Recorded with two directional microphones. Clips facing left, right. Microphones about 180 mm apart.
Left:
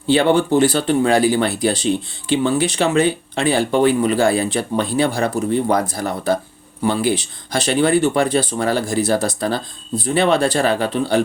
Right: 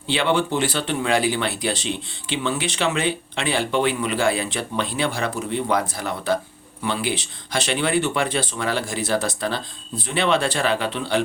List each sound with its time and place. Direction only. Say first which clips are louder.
0.1 s speech: left 7 dB; 45° left (ahead or behind)